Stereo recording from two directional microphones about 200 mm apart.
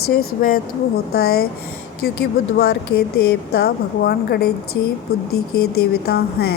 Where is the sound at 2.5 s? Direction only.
55° left (ahead or behind).